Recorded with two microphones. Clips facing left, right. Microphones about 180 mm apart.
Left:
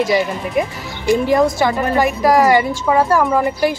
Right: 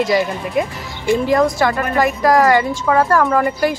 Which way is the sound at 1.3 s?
5° left (ahead or behind).